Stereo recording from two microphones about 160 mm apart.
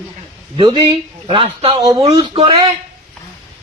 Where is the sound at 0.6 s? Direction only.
30° right (ahead or behind).